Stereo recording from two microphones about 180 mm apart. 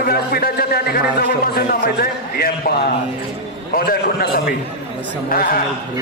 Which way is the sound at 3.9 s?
60° left (ahead or behind).